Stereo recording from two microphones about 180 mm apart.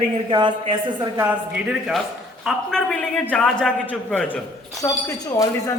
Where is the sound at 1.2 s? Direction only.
5° right (ahead or behind).